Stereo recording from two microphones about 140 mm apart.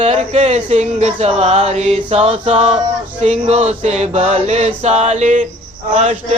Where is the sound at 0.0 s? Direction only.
50° right (ahead or behind).